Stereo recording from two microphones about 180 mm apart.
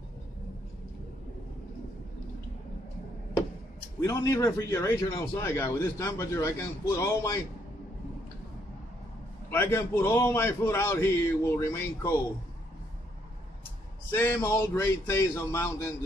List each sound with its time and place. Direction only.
4.0 s a man's voice: 15° left (ahead or behind)
9.5 s a man's voice: 15° left (ahead or behind)
14.1 s a man's voice: 15° left (ahead or behind)